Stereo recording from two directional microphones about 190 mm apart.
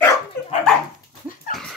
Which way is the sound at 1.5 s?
Centre (ahead or behind).